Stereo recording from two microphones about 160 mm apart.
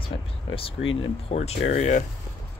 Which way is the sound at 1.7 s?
45° left (ahead or behind).